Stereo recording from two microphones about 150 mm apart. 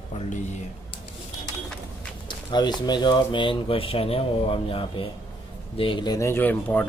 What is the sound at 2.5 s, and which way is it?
Speech, 30° left (ahead or behind).